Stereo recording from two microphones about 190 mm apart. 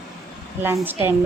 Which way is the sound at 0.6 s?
10° right (ahead or behind).